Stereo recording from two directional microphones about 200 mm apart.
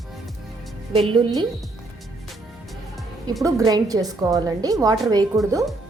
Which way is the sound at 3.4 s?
15° right (ahead or behind).